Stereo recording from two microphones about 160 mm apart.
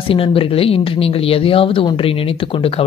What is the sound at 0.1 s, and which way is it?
Speech, 35° left (ahead or behind).